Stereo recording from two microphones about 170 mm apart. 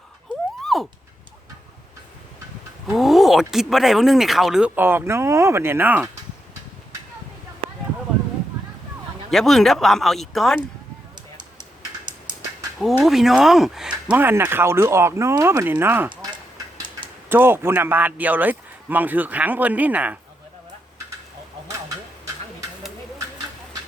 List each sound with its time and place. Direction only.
0.6 s a sound: centre (ahead or behind)
2.8 s speech: centre (ahead or behind)
9.3 s speech: centre (ahead or behind)
12.8 s speech: centre (ahead or behind)